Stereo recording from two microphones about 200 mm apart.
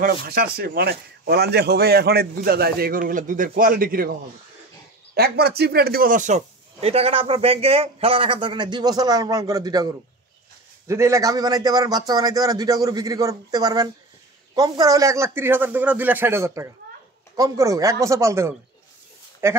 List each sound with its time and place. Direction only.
0.0 s a man's voice: 45° right (ahead or behind)
5.1 s a man's voice: 50° right (ahead or behind); by 19.6 s 15° right (ahead or behind)